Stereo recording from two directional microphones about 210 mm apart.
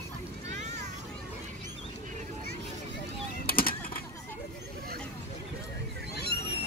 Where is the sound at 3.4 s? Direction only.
45° left (ahead or behind).